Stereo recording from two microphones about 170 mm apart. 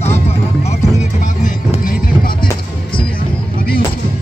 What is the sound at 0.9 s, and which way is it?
Music, 45° left (ahead or behind).